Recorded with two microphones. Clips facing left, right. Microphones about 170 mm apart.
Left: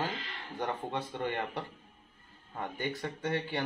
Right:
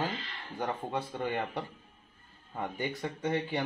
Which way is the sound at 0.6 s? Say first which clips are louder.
Right 1 dB; 10° right (ahead or behind).